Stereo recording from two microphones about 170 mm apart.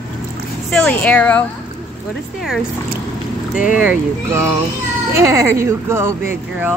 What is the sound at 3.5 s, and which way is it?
Speech, 5° right (ahead or behind).